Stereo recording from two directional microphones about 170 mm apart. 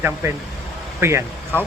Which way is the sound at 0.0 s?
15° right (ahead or behind).